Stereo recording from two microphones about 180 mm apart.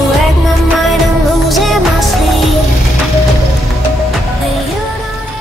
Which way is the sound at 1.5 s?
Centre (ahead or behind).